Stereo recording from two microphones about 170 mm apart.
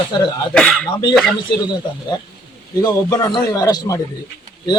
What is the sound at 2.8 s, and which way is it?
A man's voice, 20° left (ahead or behind).